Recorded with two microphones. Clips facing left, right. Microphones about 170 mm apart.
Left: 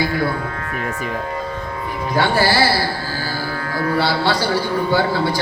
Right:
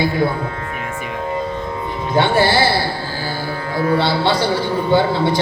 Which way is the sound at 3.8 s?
20° right (ahead or behind).